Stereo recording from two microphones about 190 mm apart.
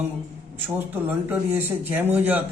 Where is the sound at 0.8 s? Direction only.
10° right (ahead or behind).